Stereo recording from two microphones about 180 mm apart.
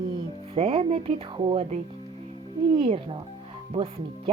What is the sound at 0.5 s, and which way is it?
Speech, 35° right (ahead or behind).